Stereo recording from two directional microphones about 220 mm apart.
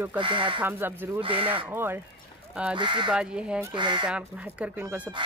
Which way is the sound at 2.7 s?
20° right (ahead or behind).